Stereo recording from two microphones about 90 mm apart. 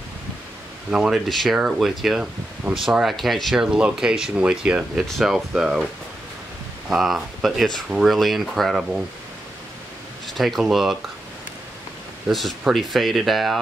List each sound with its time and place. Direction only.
0.9 s speech: 5° right (ahead or behind)
6.9 s speech: 5° right (ahead or behind)
10.2 s speech: centre (ahead or behind)
12.3 s speech: centre (ahead or behind)